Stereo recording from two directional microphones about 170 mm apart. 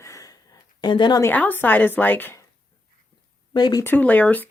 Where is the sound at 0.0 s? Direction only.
20° left (ahead or behind).